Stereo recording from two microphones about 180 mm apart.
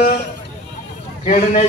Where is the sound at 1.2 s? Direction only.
40° left (ahead or behind).